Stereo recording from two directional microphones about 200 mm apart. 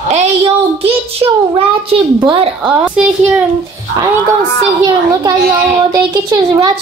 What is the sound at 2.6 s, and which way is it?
Speech, 5° right (ahead or behind).